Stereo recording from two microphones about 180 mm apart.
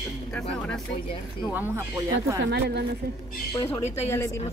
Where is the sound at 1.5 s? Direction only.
10° right (ahead or behind).